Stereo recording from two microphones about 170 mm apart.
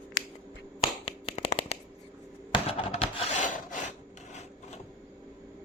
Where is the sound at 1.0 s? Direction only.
35° left (ahead or behind).